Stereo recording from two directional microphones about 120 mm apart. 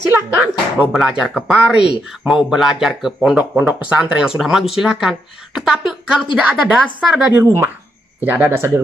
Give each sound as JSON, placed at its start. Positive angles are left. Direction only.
{"t": 0.1, "sound": "a woman's voice", "side_deg": -15}
{"t": 7.3, "sound": "speech", "side_deg": -20}